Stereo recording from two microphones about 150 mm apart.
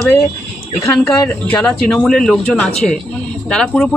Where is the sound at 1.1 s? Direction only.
5° left (ahead or behind).